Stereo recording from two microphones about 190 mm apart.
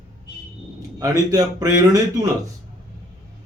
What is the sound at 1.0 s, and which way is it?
Speech, 20° right (ahead or behind).